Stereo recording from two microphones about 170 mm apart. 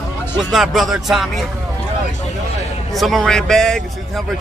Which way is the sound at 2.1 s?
45° left (ahead or behind).